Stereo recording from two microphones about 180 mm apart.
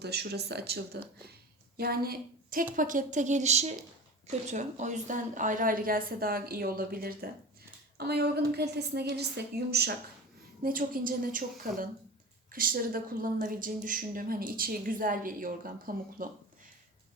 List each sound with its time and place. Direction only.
0.0 s a woman's voice: 65° right (ahead or behind)
10.6 s a woman's voice: 50° right (ahead or behind)